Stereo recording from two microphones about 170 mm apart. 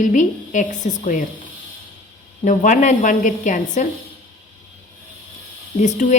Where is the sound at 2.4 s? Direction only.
45° left (ahead or behind).